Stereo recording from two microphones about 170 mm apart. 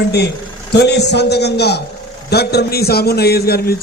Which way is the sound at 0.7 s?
80° left.